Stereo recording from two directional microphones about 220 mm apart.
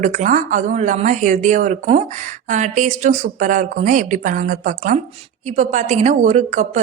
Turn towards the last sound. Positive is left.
turn(degrees=-35)  # may be behind; listen again after turning